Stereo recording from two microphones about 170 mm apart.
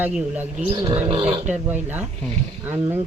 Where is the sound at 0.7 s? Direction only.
25° right (ahead or behind).